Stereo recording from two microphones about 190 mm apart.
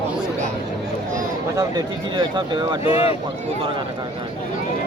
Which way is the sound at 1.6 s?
20° right (ahead or behind).